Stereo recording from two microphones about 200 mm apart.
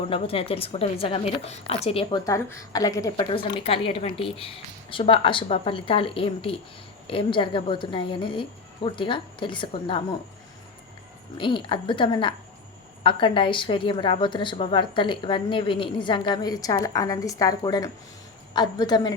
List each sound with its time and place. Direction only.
0.1 s a woman's voice: 30° left (ahead or behind)
11.3 s a woman's voice: 25° left (ahead or behind)